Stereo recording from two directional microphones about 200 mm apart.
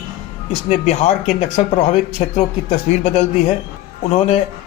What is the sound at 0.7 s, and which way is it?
Speech, 35° left (ahead or behind).